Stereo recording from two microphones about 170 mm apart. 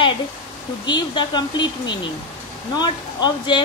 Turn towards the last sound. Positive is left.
turn(degrees=25)  # may be behind; listen again after turning